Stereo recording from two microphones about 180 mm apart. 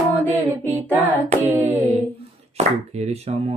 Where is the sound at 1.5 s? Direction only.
10° right (ahead or behind).